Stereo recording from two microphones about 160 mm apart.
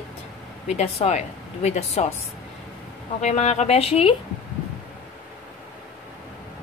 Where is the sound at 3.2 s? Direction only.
40° left (ahead or behind).